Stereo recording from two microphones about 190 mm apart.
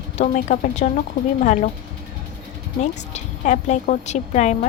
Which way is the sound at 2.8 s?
40° left (ahead or behind).